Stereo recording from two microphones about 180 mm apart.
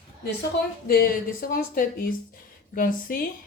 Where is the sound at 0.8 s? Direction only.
55° left (ahead or behind).